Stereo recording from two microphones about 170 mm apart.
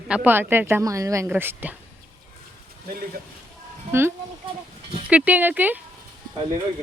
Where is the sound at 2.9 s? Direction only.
60° right (ahead or behind).